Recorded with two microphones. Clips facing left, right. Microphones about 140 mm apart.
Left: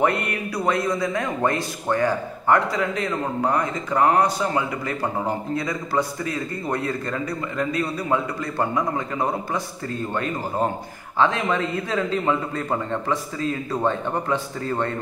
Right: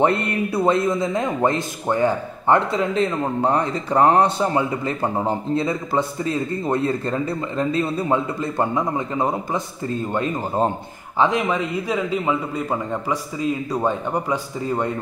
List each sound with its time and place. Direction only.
0.0 s a man's voice: 25° right (ahead or behind)